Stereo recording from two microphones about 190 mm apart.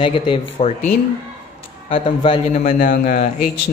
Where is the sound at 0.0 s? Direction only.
30° left (ahead or behind).